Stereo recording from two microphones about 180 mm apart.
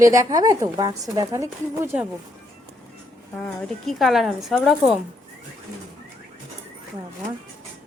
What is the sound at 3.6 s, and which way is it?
Speech, centre (ahead or behind).